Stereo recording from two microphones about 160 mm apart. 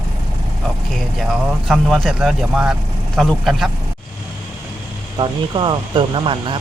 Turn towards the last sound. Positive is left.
turn(degrees=-30)  # may be behind; listen again after turning